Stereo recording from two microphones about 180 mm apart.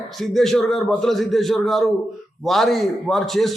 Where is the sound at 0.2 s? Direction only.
Centre (ahead or behind).